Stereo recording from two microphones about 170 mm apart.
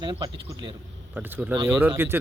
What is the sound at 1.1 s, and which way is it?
Speech, 10° right (ahead or behind).